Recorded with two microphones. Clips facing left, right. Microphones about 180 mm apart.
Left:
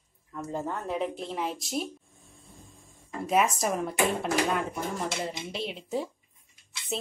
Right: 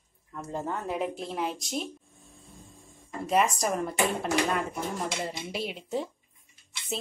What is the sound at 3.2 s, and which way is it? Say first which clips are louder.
Speech: even; centre (ahead or behind).